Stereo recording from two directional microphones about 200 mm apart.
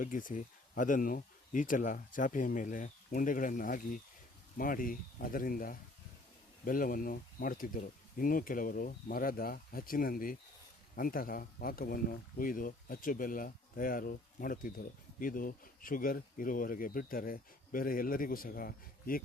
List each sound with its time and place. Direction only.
0.0 s speech: 40° left (ahead or behind)